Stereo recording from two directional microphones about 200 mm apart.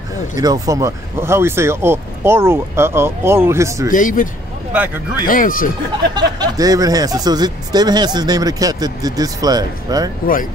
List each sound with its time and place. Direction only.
0.4 s speech: 20° right (ahead or behind)
3.9 s speech: 40° left (ahead or behind)
6.1 s speech: 20° right (ahead or behind)